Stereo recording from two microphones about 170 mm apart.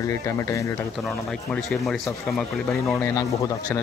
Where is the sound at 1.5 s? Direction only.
5° left (ahead or behind).